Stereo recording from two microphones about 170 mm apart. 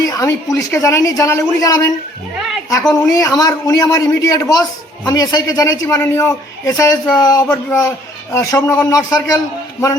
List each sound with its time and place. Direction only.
0.0 s a man's voice: 20° left (ahead or behind)
2.9 s a man's voice: 20° left (ahead or behind)